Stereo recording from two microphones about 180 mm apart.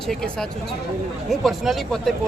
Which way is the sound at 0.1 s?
Centre (ahead or behind).